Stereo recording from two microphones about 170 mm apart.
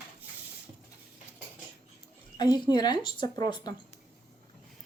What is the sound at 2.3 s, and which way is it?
A woman's voice, 25° left (ahead or behind).